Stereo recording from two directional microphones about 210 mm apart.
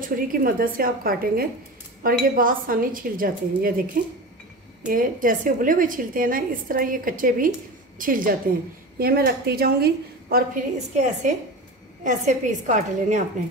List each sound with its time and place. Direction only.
0.0 s a woman's voice: 40° right (ahead or behind)
4.8 s a woman's voice: 40° right (ahead or behind)